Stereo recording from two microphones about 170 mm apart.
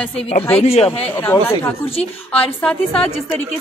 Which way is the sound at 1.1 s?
15° left (ahead or behind).